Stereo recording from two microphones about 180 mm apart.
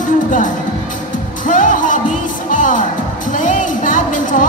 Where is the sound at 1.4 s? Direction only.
45° left (ahead or behind).